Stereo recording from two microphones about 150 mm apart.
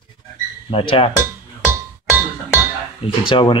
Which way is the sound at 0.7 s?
35° left (ahead or behind).